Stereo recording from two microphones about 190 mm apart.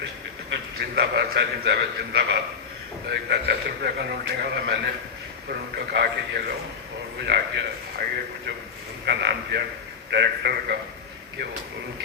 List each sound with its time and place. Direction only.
0.5 s speech: 60° right (ahead or behind)
9.0 s speech: 60° right (ahead or behind)